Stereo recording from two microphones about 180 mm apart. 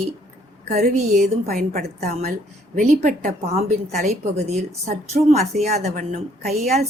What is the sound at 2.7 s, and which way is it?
A woman's voice, 40° right (ahead or behind).